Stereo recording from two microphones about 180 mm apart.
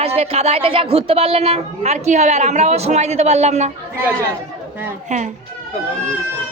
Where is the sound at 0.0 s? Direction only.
35° right (ahead or behind).